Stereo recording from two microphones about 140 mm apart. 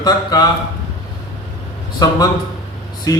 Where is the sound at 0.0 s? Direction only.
25° left (ahead or behind).